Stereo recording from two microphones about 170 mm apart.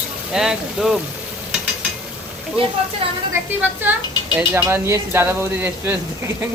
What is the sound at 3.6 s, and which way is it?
Speech, 10° right (ahead or behind).